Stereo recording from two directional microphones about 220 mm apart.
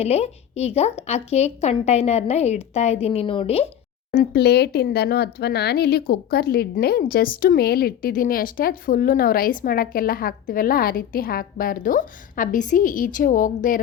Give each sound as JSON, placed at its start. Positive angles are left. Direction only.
{"t": 0.0, "sound": "a woman's voice", "side_deg": 30}
{"t": 4.1, "sound": "speech", "side_deg": 45}